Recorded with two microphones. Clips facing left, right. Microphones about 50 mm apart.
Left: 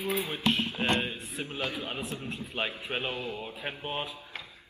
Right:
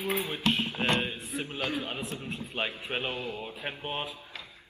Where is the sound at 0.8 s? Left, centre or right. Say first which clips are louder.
Even; centre.